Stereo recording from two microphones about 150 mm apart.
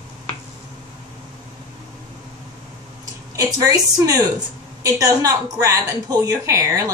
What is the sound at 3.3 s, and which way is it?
A woman's voice, 25° right (ahead or behind).